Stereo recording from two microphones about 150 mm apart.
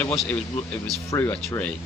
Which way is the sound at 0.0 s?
10° left (ahead or behind).